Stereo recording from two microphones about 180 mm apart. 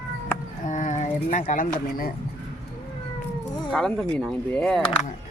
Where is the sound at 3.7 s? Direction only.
Centre (ahead or behind).